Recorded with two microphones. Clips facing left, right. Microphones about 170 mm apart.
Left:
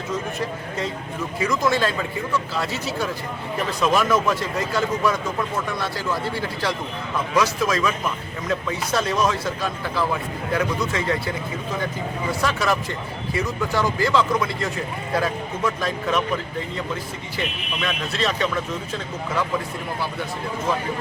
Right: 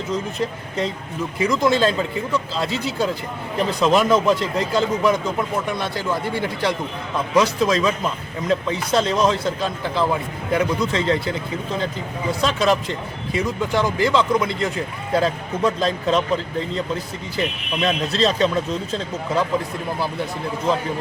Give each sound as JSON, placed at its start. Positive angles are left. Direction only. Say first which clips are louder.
{"t": 1.4, "sound": "speech", "louder": "right 3 dB", "side_deg": -25}
{"t": 12.4, "sound": "speech", "louder": "right 4 dB", "side_deg": -20}
{"t": 17.7, "sound": "speech", "louder": "right 6 dB", "side_deg": -30}